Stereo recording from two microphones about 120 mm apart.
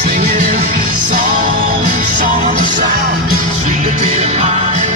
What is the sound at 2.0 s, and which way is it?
Music, 90° right.